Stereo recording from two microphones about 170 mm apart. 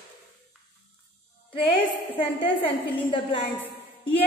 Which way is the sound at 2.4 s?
30° left (ahead or behind).